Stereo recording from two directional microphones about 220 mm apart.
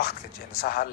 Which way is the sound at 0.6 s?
45° left (ahead or behind).